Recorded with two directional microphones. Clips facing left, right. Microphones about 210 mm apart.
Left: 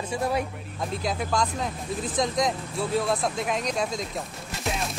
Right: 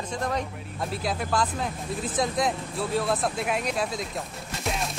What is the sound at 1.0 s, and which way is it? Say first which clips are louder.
Speech: even; centre (ahead or behind).